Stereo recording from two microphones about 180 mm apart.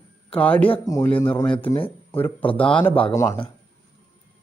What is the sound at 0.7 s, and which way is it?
Speech, 20° left (ahead or behind).